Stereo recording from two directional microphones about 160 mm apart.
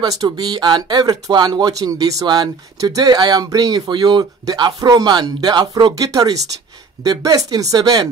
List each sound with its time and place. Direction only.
0.0 s speech: 25° right (ahead or behind)